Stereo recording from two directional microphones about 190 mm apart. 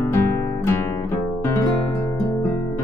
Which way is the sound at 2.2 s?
15° left (ahead or behind).